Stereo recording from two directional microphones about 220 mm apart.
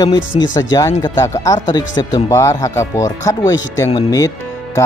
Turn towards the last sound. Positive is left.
turn(degrees=15)  # may be behind; listen again after turning